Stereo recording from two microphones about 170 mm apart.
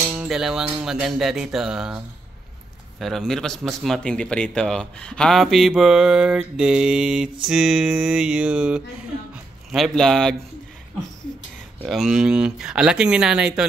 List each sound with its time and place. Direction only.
0.1 s a man's voice: 5° right (ahead or behind)
11.8 s a man's voice: centre (ahead or behind)